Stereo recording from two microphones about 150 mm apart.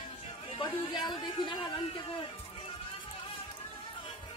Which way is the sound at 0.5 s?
30° left (ahead or behind).